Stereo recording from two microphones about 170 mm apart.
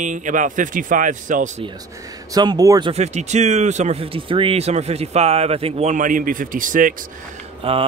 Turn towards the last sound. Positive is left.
turn(degrees=-35)  # may be behind; listen again after turning